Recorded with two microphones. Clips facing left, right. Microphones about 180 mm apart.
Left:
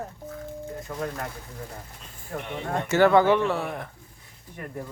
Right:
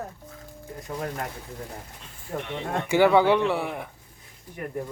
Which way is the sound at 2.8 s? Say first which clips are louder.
Even; 10° right (ahead or behind).